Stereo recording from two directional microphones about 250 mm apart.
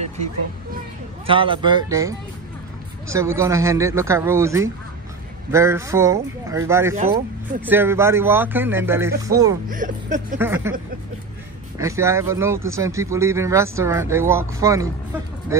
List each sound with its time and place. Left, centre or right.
1.2 s speech: right
9.7 s a sound: right
10.4 s speech: centre
11.8 s speech: centre